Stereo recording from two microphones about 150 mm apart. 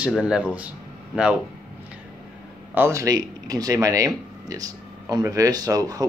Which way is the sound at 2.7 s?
20° right (ahead or behind).